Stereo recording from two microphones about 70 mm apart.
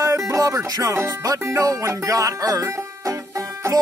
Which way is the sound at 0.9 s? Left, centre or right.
Right.